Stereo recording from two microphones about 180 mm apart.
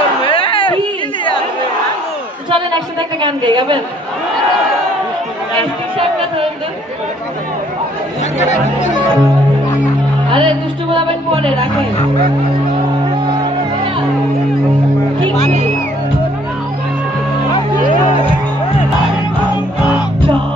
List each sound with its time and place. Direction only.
0.2 s a sound: 30° left (ahead or behind)
3.2 s speech: 25° right (ahead or behind)
8.4 s speech: 40° left (ahead or behind)
10.3 s speech: 30° right (ahead or behind)